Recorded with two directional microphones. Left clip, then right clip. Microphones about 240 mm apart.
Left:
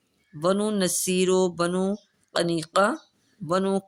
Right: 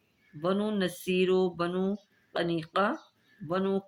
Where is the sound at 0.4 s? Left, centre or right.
Left.